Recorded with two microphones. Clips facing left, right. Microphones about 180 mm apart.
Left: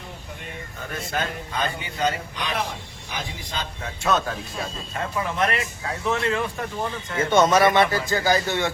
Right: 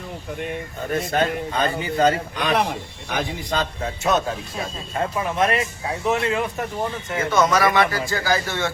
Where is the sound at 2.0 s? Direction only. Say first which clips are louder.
Right 6 dB; 50° right (ahead or behind); by 3.2 s 70° right (ahead or behind).